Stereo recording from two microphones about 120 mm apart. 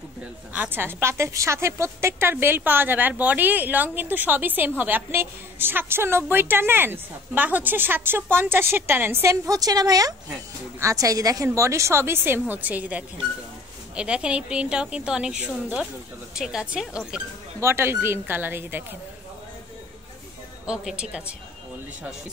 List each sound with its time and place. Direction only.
0.5 s a woman's voice: 15° right (ahead or behind)
17.6 s a woman's voice: 20° right (ahead or behind)
20.6 s a woman's voice: 5° right (ahead or behind)